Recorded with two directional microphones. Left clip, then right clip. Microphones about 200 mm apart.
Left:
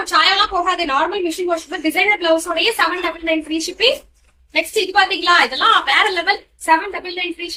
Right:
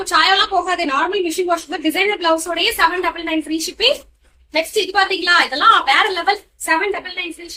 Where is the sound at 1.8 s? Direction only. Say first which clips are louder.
Left 4 dB; 25° right (ahead or behind).